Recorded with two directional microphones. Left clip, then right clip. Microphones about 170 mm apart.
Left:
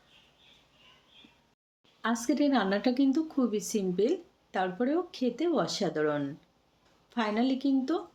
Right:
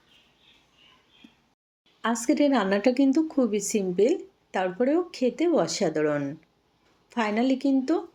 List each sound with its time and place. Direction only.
2.0 s speech: 20° right (ahead or behind)